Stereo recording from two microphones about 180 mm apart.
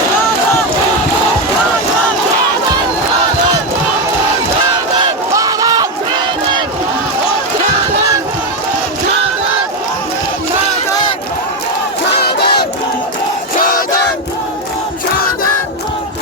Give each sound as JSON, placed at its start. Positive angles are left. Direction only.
{"t": 5.3, "sound": "battle cry", "side_deg": -20}
{"t": 12.2, "sound": "battle cry", "side_deg": 60}
{"t": 13.6, "sound": "battle cry", "side_deg": 50}